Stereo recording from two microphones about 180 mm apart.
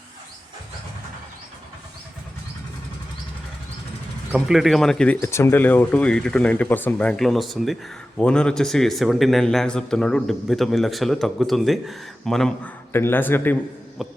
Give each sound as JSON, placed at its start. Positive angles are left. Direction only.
{"t": 4.4, "sound": "speech", "side_deg": 0}
{"t": 14.0, "sound": "speech", "side_deg": 0}